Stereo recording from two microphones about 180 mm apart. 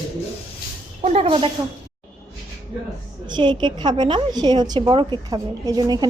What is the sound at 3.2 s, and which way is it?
A woman's voice, 25° right (ahead or behind).